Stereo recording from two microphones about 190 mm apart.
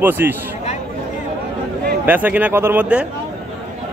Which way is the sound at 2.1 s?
10° right (ahead or behind).